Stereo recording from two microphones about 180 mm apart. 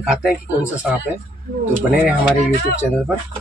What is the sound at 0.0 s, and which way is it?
Speech, 5° right (ahead or behind).